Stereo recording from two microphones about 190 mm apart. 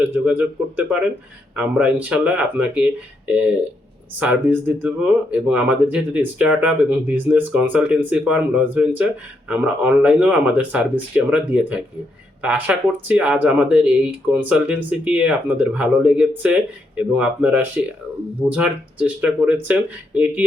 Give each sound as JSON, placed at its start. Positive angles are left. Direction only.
{"t": 0.0, "sound": "speech", "side_deg": -10}